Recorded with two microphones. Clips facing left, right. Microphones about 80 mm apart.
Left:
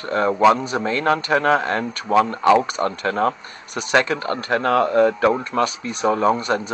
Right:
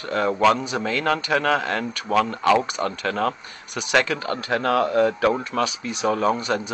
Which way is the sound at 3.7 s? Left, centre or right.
Left.